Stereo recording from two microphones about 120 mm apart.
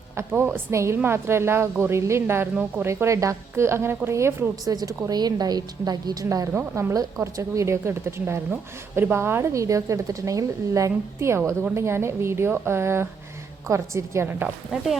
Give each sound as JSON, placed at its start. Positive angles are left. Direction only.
{"t": 0.2, "sound": "a woman's voice", "side_deg": -20}
{"t": 6.5, "sound": "a woman's voice", "side_deg": -15}
{"t": 14.4, "sound": "speech", "side_deg": -5}